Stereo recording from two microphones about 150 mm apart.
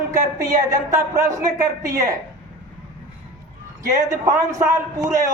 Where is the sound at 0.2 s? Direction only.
25° right (ahead or behind).